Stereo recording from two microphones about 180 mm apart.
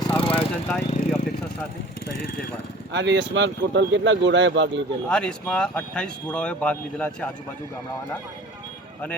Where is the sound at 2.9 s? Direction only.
75° right (ahead or behind).